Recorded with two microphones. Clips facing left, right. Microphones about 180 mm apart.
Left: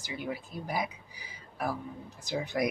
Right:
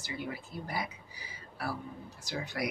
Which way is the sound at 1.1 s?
15° left (ahead or behind).